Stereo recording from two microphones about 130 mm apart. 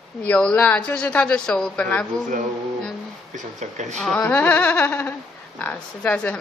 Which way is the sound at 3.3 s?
65° right (ahead or behind).